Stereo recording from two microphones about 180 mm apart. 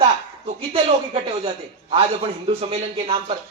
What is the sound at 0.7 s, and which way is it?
Speech, 30° right (ahead or behind).